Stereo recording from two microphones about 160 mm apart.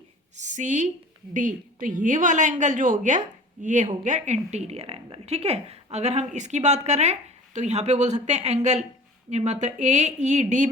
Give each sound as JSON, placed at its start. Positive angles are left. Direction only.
{"t": 0.3, "sound": "speech", "side_deg": -50}